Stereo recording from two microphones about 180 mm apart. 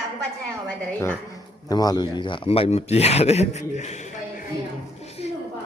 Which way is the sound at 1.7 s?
20° left (ahead or behind).